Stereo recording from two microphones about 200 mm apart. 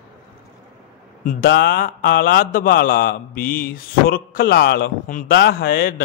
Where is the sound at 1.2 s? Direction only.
50° left (ahead or behind).